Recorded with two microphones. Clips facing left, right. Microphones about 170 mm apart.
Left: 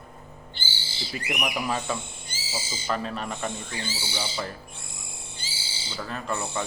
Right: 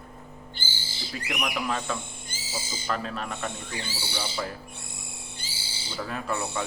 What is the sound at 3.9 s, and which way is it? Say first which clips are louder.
Speech: left 2 dB; 60° right (ahead or behind).